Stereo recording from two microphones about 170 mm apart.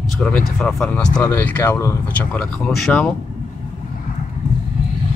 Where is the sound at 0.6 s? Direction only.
5° left (ahead or behind).